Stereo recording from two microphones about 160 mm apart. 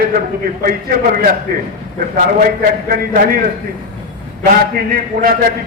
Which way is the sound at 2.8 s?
65° right (ahead or behind).